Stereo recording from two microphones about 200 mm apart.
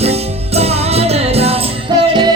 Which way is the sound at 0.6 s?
30° right (ahead or behind).